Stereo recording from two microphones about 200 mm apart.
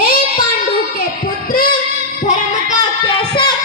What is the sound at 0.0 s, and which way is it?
Child singing, 50° left (ahead or behind).